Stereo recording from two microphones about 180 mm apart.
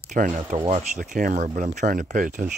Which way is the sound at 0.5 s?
30° right (ahead or behind).